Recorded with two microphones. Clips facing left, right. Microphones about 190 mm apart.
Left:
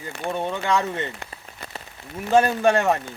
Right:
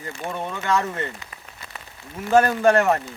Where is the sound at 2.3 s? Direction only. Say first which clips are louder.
Right 1 dB; 15° left (ahead or behind).